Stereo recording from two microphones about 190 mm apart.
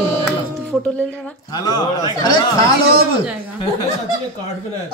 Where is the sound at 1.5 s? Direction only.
20° left (ahead or behind).